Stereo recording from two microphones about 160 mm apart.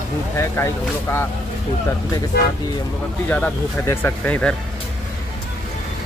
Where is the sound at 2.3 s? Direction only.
85° left.